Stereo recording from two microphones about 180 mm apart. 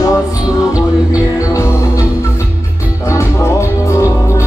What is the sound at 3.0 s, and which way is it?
Music, 15° left (ahead or behind).